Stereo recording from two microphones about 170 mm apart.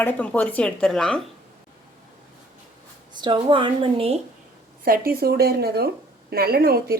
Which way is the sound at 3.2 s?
30° right (ahead or behind).